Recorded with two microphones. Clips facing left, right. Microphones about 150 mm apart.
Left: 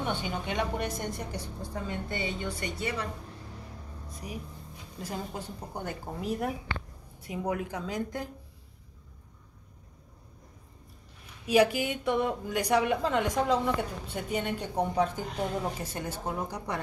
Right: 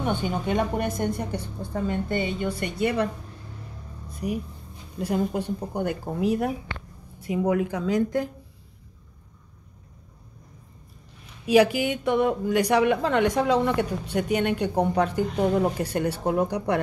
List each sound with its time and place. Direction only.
0.0 s a woman's voice: 50° right (ahead or behind)
4.1 s a sound: 65° right (ahead or behind)
5.0 s a woman's voice: 65° right (ahead or behind)
7.2 s a woman's voice: 90° right
11.4 s a woman's voice: 90° right; by 16.8 s 65° right (ahead or behind)